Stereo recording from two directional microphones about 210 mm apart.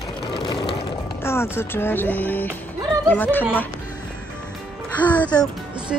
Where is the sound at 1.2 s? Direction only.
10° left (ahead or behind).